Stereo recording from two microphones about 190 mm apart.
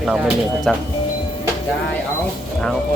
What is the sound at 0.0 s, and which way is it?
Speech, 5° right (ahead or behind).